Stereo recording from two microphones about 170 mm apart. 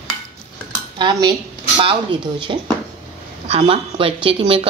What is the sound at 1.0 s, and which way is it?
Speech, 25° right (ahead or behind).